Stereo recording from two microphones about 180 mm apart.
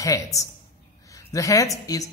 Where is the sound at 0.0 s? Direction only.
20° left (ahead or behind).